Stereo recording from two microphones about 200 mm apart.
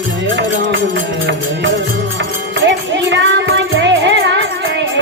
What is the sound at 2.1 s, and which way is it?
Music, 65° right (ahead or behind).